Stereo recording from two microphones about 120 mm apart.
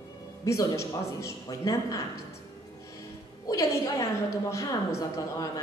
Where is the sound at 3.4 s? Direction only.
30° left (ahead or behind).